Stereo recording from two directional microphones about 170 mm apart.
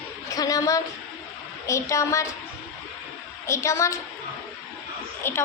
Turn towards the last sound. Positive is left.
turn(degrees=15)  # may be behind; listen again after turning